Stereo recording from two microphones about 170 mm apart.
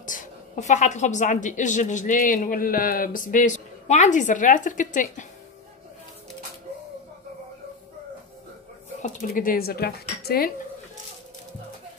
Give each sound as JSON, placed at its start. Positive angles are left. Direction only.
{"t": 0.0, "sound": "a woman's voice", "side_deg": 50}
{"t": 9.0, "sound": "speech", "side_deg": 55}